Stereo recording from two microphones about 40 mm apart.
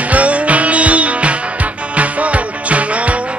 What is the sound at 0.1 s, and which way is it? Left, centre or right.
Music, right.